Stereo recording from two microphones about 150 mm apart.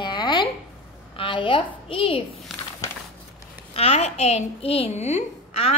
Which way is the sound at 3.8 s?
45° left (ahead or behind).